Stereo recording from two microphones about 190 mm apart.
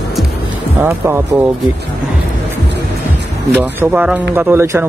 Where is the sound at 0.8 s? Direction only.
10° right (ahead or behind).